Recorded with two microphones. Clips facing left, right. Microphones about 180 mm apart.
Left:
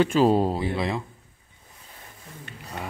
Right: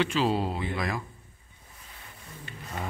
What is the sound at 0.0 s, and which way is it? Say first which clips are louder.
Speech: left 7 dB; 45° left (ahead or behind).